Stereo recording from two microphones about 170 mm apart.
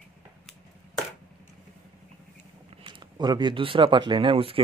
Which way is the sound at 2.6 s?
30° right (ahead or behind).